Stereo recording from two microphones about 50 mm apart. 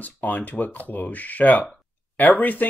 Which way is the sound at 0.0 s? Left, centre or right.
Left.